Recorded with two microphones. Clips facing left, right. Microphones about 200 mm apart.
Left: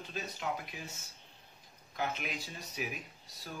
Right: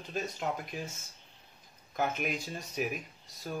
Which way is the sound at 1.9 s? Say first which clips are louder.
Right 5 dB; 50° right (ahead or behind).